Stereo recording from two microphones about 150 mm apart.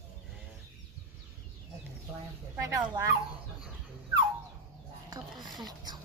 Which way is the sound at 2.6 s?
20° right (ahead or behind).